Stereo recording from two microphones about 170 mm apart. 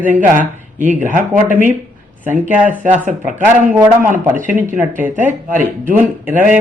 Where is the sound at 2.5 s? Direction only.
10° right (ahead or behind).